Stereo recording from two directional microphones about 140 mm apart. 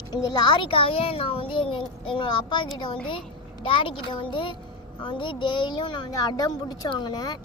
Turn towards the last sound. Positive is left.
turn(degrees=30)  # may be behind; listen again after turning